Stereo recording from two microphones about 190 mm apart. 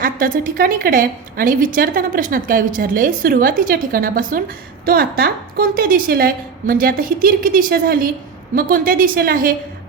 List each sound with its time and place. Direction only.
0.0 s a woman's voice: 45° right (ahead or behind)